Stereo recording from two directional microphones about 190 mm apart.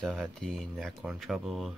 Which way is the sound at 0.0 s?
Centre (ahead or behind).